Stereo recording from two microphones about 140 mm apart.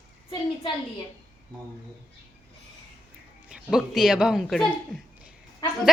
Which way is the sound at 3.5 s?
5° right (ahead or behind).